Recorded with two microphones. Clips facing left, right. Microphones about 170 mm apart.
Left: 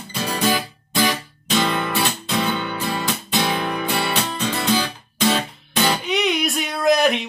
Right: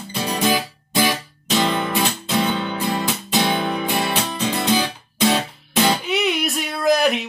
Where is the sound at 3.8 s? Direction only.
20° right (ahead or behind).